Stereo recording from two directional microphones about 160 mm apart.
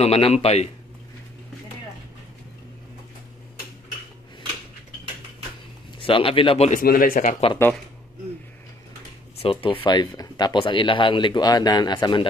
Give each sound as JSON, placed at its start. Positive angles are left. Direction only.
{"t": 0.0, "sound": "a man's voice", "side_deg": 40}
{"t": 5.9, "sound": "speech", "side_deg": 35}
{"t": 6.7, "sound": "speech", "side_deg": 60}
{"t": 9.4, "sound": "speech", "side_deg": 35}